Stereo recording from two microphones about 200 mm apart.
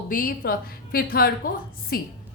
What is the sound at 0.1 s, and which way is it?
A woman's voice, 45° left (ahead or behind).